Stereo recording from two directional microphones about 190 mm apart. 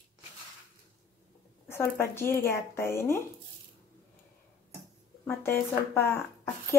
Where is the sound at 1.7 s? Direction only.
10° left (ahead or behind).